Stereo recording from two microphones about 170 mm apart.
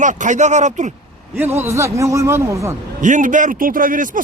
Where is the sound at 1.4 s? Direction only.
15° right (ahead or behind).